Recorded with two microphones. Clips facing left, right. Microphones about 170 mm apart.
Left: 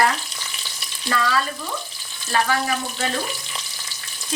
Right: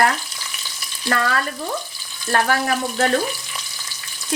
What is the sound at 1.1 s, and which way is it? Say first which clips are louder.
Speech: right 1 dB; 55° right (ahead or behind).